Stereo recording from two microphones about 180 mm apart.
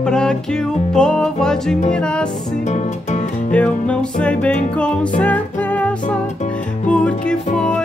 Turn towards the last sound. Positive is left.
turn(degrees=5)  # may be behind; listen again after turning